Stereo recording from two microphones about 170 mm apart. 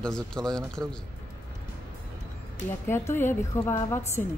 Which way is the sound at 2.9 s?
15° left (ahead or behind).